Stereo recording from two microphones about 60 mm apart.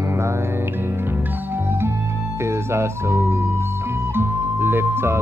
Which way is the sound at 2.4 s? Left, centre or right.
Right.